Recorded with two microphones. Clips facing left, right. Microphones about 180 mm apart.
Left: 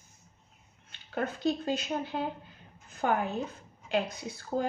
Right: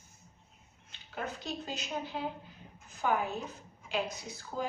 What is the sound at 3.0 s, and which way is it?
Speech, 55° left (ahead or behind).